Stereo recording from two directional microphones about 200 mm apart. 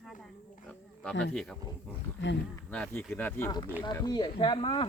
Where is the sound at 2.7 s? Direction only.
10° left (ahead or behind); by 4.9 s 25° left (ahead or behind).